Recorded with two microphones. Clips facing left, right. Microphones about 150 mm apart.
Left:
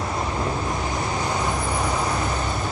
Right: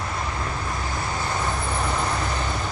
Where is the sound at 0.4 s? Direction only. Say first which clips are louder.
Left 4 dB; 20° left (ahead or behind).